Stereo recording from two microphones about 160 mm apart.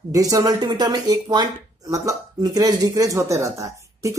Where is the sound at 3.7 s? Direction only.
20° right (ahead or behind).